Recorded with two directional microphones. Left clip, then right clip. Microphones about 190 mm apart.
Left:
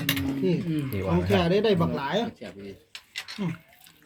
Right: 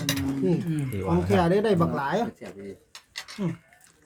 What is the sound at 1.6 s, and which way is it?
Speech, 30° right (ahead or behind).